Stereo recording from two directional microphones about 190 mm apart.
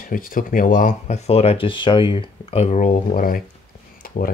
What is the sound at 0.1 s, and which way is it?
Speech, 50° left (ahead or behind).